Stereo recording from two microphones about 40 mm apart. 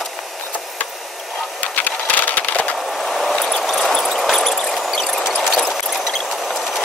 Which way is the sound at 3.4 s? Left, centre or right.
Centre.